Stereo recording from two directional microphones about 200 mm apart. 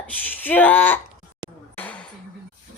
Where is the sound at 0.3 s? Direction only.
10° left (ahead or behind).